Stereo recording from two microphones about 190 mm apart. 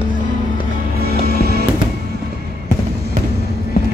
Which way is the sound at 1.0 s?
55° right (ahead or behind).